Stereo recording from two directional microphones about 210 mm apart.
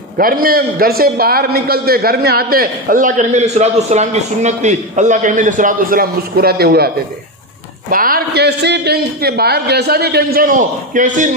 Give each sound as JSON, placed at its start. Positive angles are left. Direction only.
{"t": 0.2, "sound": "a man's voice", "side_deg": -45}
{"t": 7.9, "sound": "a man's voice", "side_deg": -45}